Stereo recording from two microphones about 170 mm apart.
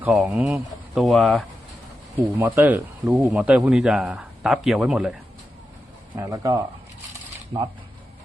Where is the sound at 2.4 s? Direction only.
10° right (ahead or behind).